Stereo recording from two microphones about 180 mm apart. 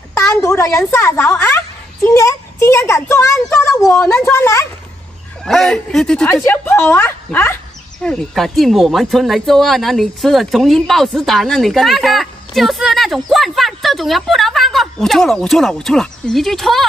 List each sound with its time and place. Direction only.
0.4 s speech: 15° left (ahead or behind)
5.4 s speech: centre (ahead or behind)